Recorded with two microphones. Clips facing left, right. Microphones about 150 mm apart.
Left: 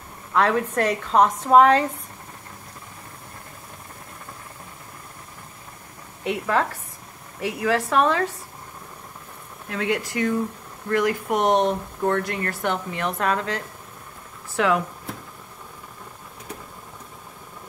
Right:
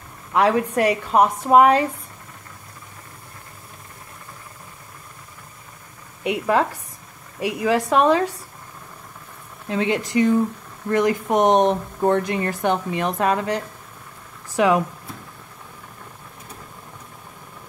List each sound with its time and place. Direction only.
0.3 s speech: 15° right (ahead or behind)
6.2 s speech: 15° right (ahead or behind)
9.7 s speech: 20° right (ahead or behind)